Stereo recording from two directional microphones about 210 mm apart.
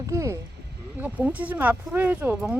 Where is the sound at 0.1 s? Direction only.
15° right (ahead or behind).